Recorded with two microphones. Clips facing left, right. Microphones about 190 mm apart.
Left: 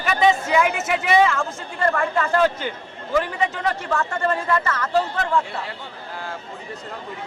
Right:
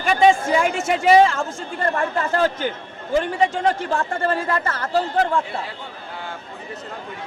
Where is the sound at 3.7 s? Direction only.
30° right (ahead or behind).